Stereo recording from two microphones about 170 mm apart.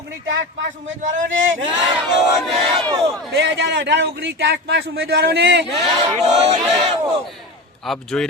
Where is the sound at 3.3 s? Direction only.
90° right.